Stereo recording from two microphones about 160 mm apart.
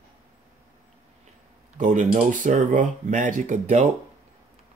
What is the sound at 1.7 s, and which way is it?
Speech, 50° right (ahead or behind).